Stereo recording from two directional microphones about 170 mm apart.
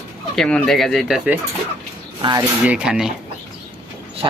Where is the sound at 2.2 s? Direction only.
25° right (ahead or behind).